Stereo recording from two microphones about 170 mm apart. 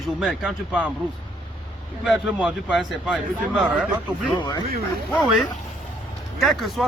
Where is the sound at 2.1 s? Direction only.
5° right (ahead or behind).